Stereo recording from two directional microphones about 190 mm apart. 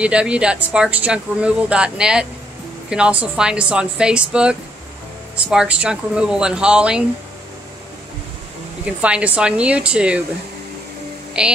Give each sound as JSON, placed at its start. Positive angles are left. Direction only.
{"t": 0.0, "sound": "speech", "side_deg": -5}
{"t": 9.0, "sound": "a woman's voice", "side_deg": -5}
{"t": 11.4, "sound": "speech", "side_deg": -5}